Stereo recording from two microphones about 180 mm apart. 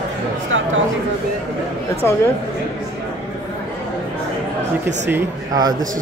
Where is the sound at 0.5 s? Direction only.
90° right.